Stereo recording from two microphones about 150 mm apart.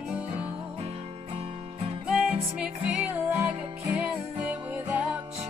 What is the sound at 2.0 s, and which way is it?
Music, 5° right (ahead or behind).